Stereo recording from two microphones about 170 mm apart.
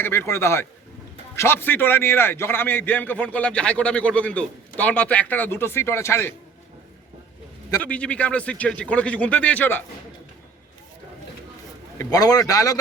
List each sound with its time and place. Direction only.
0.0 s a man's voice: 15° left (ahead or behind)
7.8 s a man's voice: 5° left (ahead or behind)
11.9 s a man's voice: 20° left (ahead or behind)